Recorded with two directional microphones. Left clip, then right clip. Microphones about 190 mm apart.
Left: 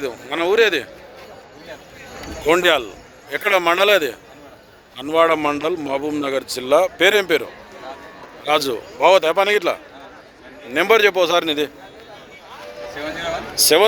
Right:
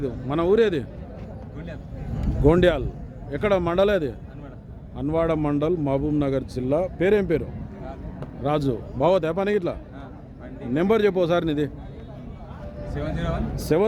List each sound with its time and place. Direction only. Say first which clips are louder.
0.0 s a man's voice: left 3 dB; 5° right (ahead or behind)
2.5 s a man's voice: left 4 dB; 10° left (ahead or behind)
8.4 s a man's voice: left 6 dB; centre (ahead or behind)
10.8 s a man's voice: left 6 dB; 5° right (ahead or behind)
13.6 s a man's voice: left 8 dB; 5° left (ahead or behind)